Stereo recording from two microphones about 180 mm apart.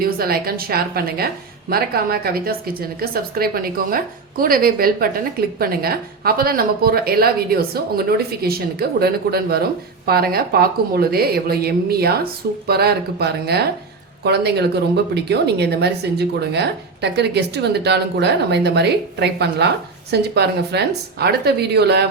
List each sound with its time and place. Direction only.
0.0 s a woman's voice: 55° right (ahead or behind)